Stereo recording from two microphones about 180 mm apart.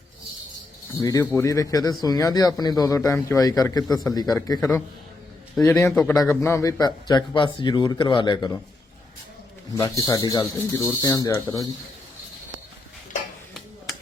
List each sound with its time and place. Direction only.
0.9 s speech: 20° left (ahead or behind)
5.9 s speech: 5° left (ahead or behind)
6.4 s speech: 15° left (ahead or behind)
9.7 s speech: 20° left (ahead or behind)